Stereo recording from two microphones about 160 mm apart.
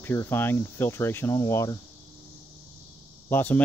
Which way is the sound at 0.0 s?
15° left (ahead or behind).